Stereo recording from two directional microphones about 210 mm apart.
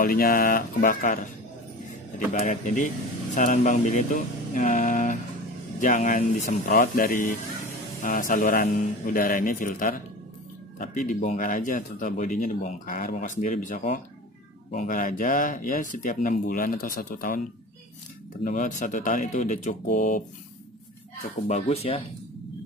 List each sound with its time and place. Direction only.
0.0 s speech: 45° left (ahead or behind)
18.4 s speech: 35° left (ahead or behind)
21.5 s speech: 30° left (ahead or behind)